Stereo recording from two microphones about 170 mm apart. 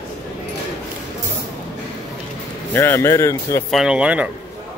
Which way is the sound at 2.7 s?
15° left (ahead or behind).